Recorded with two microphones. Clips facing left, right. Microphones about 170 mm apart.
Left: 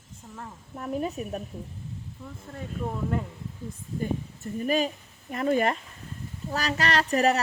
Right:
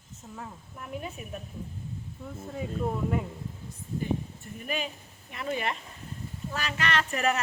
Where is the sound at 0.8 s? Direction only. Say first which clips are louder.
Left 8 dB; 40° left (ahead or behind).